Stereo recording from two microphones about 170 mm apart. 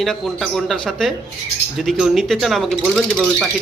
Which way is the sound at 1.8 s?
Centre (ahead or behind).